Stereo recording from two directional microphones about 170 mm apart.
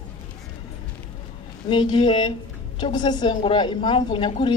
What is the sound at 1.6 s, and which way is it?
A woman's voice, 30° left (ahead or behind).